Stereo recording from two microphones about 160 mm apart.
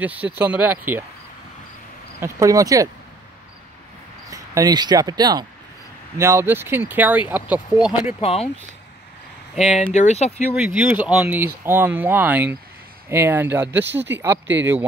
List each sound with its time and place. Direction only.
0.0 s speech: 10° right (ahead or behind)
2.1 s speech: 20° right (ahead or behind)
4.3 s speech: 20° right (ahead or behind); by 8.2 s 5° right (ahead or behind)
8.2 s speech: 40° left (ahead or behind)
9.6 s speech: 45° left (ahead or behind)
10.5 s speech: 5° right (ahead or behind)